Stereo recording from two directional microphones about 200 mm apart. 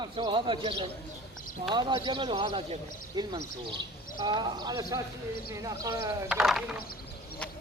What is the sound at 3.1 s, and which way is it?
A man's voice, 20° right (ahead or behind).